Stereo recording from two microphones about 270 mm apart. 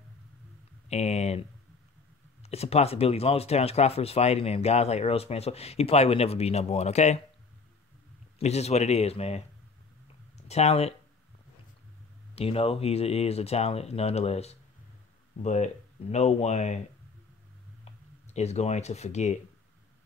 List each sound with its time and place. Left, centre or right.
0.8 s a sound: left
2.4 s speech: left
8.4 s speech: left
12.4 s speech: left
18.3 s speech: left